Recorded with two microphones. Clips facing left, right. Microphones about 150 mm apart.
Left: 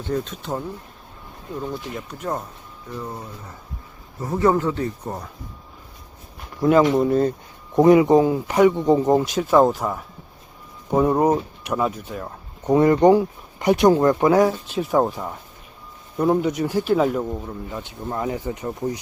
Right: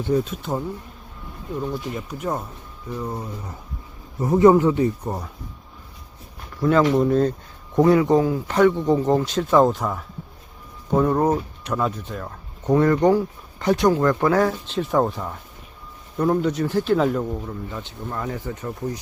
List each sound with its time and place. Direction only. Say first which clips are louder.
0.0 s speech: right 4 dB; 10° right (ahead or behind)
6.6 s speech: left 1 dB; 15° left (ahead or behind)
7.8 s speech: left 3 dB; 15° left (ahead or behind)